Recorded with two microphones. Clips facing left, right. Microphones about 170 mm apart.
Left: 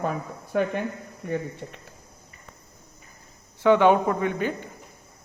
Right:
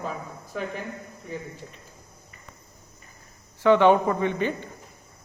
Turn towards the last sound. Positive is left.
turn(degrees=10)  # may be behind; listen again after turning